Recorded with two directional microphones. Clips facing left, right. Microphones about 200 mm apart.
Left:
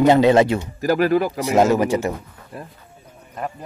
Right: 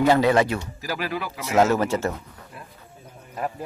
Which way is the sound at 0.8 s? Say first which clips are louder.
Left 12 dB; 50° left (ahead or behind).